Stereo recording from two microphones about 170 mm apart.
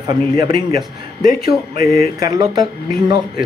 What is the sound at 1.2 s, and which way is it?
Speech, 60° left (ahead or behind).